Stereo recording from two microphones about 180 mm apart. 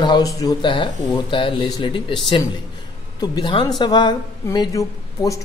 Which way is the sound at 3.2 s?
25° left (ahead or behind).